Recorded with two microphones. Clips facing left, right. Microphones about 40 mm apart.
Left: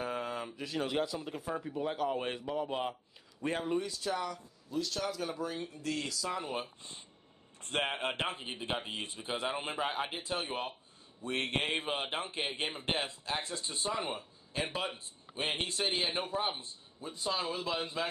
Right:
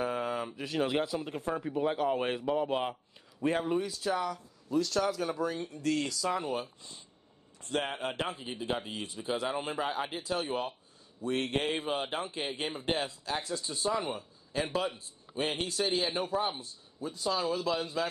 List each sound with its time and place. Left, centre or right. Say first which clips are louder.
0.0 s a sound: right 4 dB; centre
1.2 s a man's voice: right 4 dB; centre
3.4 s speech: right 4 dB; centre
6.5 s a man's voice: right 3 dB; left